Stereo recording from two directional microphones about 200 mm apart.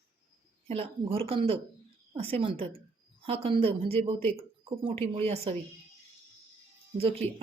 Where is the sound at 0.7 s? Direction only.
30° right (ahead or behind).